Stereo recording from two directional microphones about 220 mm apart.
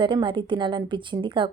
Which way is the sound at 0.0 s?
20° right (ahead or behind).